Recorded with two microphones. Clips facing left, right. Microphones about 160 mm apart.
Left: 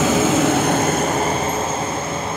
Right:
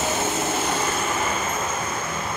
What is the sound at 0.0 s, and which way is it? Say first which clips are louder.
Vehicle: left 9 dB; 90° left.